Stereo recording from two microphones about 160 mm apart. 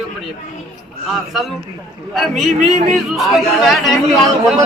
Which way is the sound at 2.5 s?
45° right (ahead or behind).